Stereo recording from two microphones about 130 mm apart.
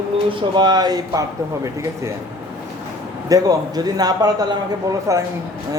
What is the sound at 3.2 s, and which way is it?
Speech, 30° right (ahead or behind).